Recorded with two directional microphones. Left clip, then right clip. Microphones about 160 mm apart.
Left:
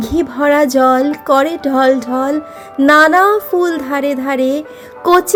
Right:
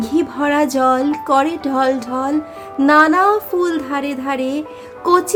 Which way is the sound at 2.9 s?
30° left (ahead or behind).